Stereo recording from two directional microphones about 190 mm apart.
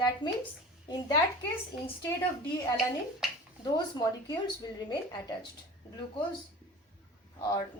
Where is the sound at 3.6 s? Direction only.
20° left (ahead or behind).